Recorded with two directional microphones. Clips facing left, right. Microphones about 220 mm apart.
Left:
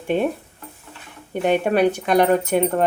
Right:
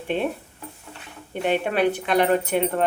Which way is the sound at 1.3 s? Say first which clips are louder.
Left 5 dB; 45° left (ahead or behind).